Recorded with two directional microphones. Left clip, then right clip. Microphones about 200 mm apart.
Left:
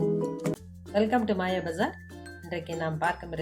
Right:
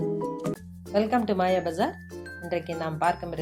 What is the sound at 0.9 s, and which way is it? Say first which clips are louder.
Speech: right 1 dB; 35° right (ahead or behind).